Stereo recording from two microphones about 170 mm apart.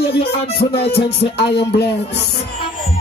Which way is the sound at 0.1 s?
65° left (ahead or behind).